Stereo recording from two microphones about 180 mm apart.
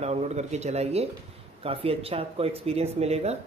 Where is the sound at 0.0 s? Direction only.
35° right (ahead or behind).